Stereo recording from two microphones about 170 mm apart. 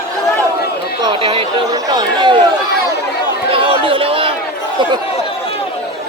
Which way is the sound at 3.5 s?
30° right (ahead or behind).